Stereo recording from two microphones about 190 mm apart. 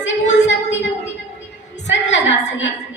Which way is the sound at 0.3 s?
70° left (ahead or behind).